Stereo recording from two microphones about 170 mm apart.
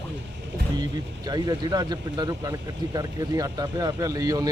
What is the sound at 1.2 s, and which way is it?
Speech, 25° right (ahead or behind).